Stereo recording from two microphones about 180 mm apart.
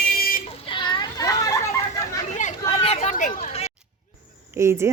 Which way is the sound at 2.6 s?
30° left (ahead or behind).